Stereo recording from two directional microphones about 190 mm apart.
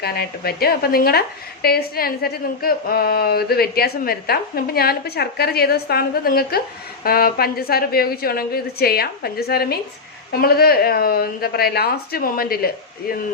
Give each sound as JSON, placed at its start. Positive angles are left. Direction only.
{"t": 0.0, "sound": "a woman's voice", "side_deg": 55}